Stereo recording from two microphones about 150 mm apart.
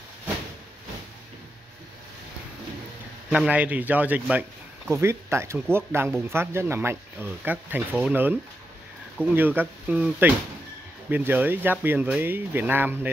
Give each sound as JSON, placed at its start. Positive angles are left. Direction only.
{"t": 3.3, "sound": "speech", "side_deg": -5}